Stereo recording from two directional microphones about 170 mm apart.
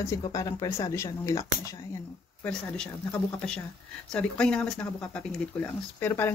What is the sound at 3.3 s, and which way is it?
Speech, 5° left (ahead or behind).